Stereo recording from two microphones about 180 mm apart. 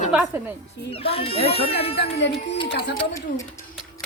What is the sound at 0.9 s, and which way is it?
Speech, 30° left (ahead or behind).